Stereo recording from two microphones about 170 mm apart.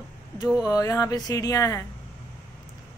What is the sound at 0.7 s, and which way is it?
Speech, 20° left (ahead or behind).